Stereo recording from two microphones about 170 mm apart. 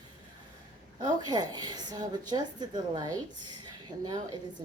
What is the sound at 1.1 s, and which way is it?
Speech, 25° right (ahead or behind).